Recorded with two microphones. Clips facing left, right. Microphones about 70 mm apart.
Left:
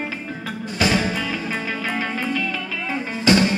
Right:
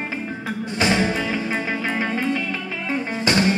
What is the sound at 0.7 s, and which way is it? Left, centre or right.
Music, right.